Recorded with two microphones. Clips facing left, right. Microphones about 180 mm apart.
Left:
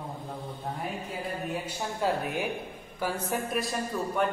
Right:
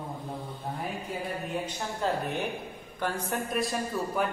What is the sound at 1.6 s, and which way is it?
A woman's voice, 10° left (ahead or behind).